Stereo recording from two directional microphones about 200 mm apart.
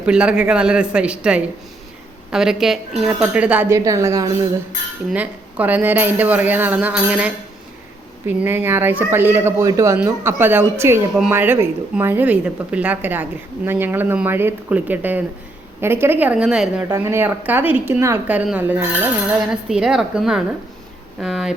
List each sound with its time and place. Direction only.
0.0 s a woman's voice: 5° right (ahead or behind)